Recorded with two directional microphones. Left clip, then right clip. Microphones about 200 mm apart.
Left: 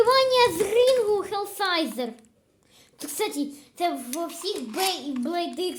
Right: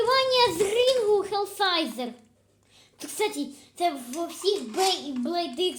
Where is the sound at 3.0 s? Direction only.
25° left (ahead or behind).